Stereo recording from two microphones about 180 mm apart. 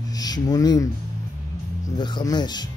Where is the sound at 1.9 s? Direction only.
25° left (ahead or behind).